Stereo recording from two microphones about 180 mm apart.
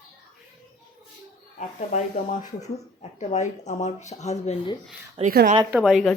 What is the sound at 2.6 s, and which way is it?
Speech, 40° left (ahead or behind).